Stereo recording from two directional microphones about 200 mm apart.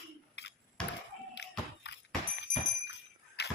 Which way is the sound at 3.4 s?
55° left (ahead or behind).